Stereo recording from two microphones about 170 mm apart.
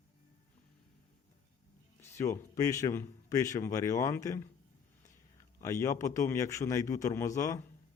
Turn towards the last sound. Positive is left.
turn(degrees=20)  # may be behind; listen again after turning